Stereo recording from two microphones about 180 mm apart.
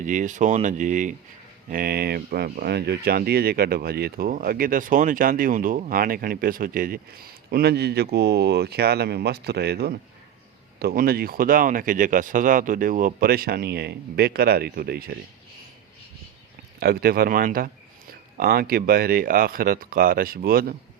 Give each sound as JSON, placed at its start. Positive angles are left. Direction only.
{"t": 0.0, "sound": "speech", "side_deg": -45}
{"t": 1.7, "sound": "speech", "side_deg": -60}
{"t": 16.8, "sound": "speech", "side_deg": -55}